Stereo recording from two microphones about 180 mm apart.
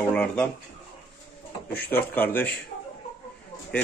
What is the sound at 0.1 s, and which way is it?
Speech, 10° left (ahead or behind).